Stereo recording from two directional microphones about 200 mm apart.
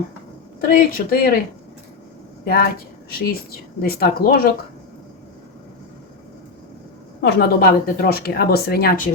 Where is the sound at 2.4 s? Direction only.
45° left (ahead or behind).